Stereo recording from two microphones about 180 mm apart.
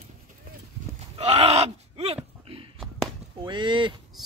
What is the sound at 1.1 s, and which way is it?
Groan, 35° right (ahead or behind).